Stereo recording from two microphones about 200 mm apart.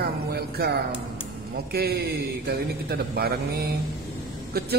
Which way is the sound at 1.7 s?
50° right (ahead or behind).